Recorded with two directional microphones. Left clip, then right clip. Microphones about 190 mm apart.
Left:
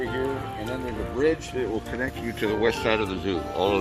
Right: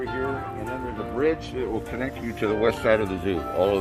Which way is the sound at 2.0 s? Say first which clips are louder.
Even; 60° right (ahead or behind).